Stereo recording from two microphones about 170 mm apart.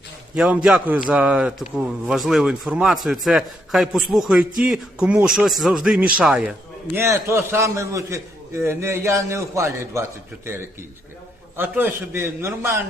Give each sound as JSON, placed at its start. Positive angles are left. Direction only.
{"t": 0.3, "sound": "a man's voice", "side_deg": -5}
{"t": 11.5, "sound": "a man's voice", "side_deg": -10}